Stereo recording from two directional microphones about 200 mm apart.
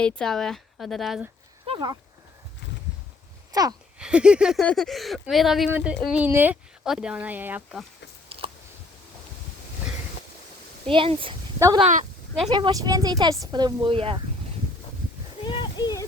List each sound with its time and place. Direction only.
0.0 s speech: 5° left (ahead or behind)
1.6 s a sound: 25° right (ahead or behind)
3.5 s speech: 20° right (ahead or behind)
3.9 s speech: 5° right (ahead or behind)
8.3 s chewing: 30° right (ahead or behind)
10.8 s speech: 25° right (ahead or behind)
15.4 s a sound: 20° left (ahead or behind)